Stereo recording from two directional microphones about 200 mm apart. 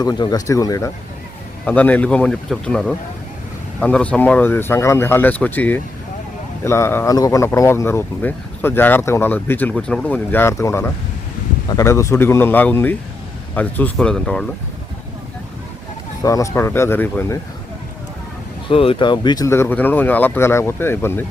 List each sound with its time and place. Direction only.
0.0 s speech: 20° left (ahead or behind); by 14.4 s 5° left (ahead or behind)
16.2 s speech: 15° left (ahead or behind)
18.7 s speech: 30° left (ahead or behind); by 21.2 s 10° left (ahead or behind)